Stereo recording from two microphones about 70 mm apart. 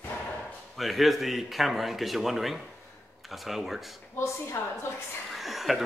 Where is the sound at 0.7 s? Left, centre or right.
Centre.